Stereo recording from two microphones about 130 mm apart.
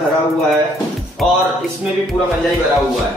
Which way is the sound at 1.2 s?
Centre (ahead or behind).